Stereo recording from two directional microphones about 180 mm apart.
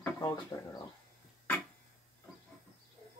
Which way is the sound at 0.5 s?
20° left (ahead or behind).